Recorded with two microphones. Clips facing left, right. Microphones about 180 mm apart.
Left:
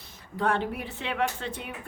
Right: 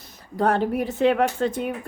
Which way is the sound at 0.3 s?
40° right (ahead or behind).